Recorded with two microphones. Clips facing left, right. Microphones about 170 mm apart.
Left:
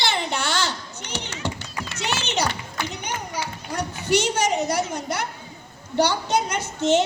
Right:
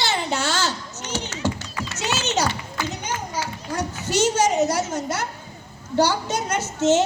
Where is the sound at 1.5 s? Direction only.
60° left (ahead or behind).